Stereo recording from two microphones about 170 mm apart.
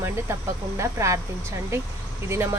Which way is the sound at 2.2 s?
15° right (ahead or behind).